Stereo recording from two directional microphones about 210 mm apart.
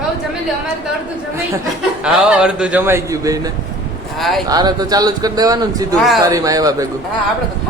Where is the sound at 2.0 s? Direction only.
5° right (ahead or behind).